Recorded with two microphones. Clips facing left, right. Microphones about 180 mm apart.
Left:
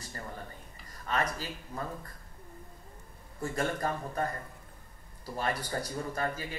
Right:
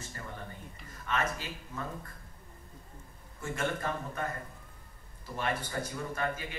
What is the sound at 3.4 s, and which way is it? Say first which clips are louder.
A man's voice: left 2 dB; 35° left (ahead or behind).